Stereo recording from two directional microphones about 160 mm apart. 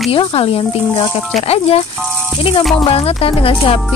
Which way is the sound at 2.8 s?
35° left (ahead or behind).